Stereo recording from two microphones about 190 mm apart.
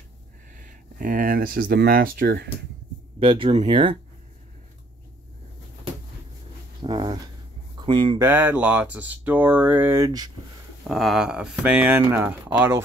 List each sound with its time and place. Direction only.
0.6 s speech: 45° right (ahead or behind)
3.2 s speech: 25° right (ahead or behind)
6.8 s speech: 25° right (ahead or behind)
8.2 s speech: 10° right (ahead or behind)
10.8 s speech: centre (ahead or behind)